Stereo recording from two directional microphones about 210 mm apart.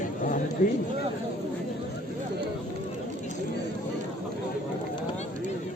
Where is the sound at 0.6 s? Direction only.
40° left (ahead or behind).